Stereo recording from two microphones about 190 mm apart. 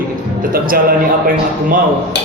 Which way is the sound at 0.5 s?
50° right (ahead or behind).